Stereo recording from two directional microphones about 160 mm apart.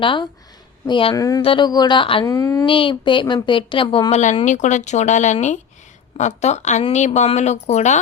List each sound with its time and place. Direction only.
0.0 s a woman's voice: 30° left (ahead or behind)
1.1 s speech: 20° left (ahead or behind)
1.4 s a woman's voice: 30° left (ahead or behind)
2.2 s speech: 20° left (ahead or behind)
2.6 s a woman's voice: 30° left (ahead or behind)
4.4 s speech: 50° left (ahead or behind)